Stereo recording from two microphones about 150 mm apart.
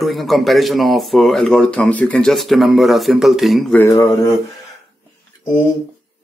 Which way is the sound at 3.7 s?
20° left (ahead or behind).